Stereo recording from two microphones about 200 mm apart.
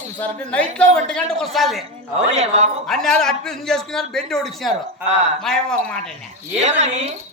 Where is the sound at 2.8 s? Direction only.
Centre (ahead or behind).